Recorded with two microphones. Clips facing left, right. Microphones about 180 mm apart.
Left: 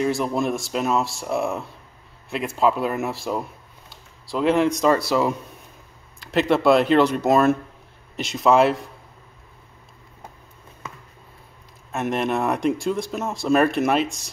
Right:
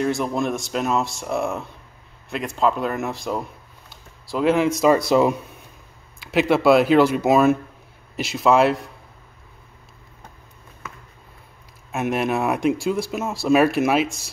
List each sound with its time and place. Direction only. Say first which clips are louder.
0.0 s speech: even; centre (ahead or behind)
4.9 s speech: right 3 dB; 20° right (ahead or behind)
6.1 s speech: right 1 dB; 5° right (ahead or behind)
11.9 s speech: right 1 dB; 5° right (ahead or behind)